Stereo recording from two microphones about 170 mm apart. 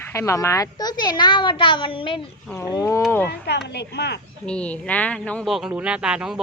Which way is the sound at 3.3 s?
80° left.